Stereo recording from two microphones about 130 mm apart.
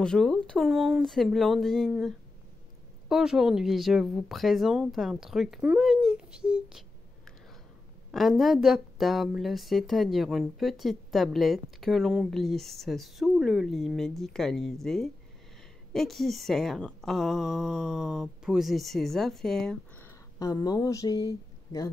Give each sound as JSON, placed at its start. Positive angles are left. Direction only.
{"t": 0.0, "sound": "speech", "side_deg": 5}
{"t": 8.1, "sound": "speech", "side_deg": 0}
{"t": 20.3, "sound": "speech", "side_deg": 30}